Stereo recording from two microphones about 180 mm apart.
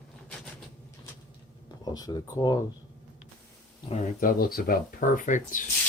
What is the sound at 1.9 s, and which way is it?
Speech, 20° left (ahead or behind).